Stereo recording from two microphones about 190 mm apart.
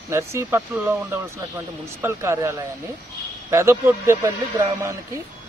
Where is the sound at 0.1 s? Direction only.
15° right (ahead or behind).